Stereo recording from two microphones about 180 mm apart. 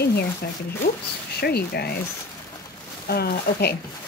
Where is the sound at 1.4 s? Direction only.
60° left (ahead or behind).